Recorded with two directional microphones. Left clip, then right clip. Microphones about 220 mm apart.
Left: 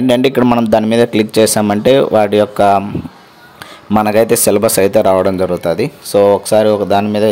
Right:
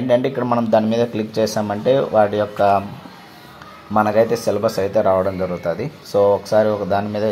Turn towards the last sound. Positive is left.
turn(degrees=30)  # may be behind; listen again after turning